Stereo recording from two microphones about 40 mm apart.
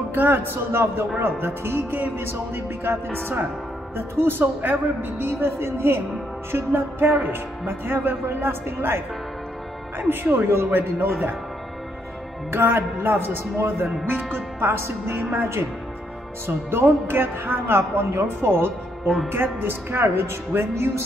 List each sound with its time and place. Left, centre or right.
0.1 s speech: right
1.2 s music: right
3.9 s speech: right
5.2 s music: right
7.2 s speech: right
9.9 s speech: right
12.5 s speech: right
13.6 s speech: right
14.0 s speech: right
16.4 s speech: right